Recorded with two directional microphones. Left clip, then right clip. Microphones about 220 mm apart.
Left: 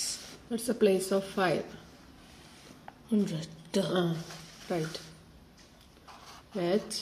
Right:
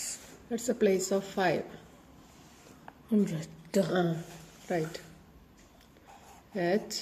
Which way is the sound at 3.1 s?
25° right (ahead or behind).